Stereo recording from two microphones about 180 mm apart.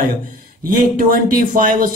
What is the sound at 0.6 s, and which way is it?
Speech, 50° right (ahead or behind).